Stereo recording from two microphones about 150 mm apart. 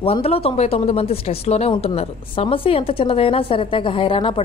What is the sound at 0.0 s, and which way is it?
Speech, 40° left (ahead or behind).